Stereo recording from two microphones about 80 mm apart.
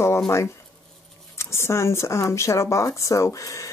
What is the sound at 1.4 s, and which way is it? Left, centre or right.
Speech, left.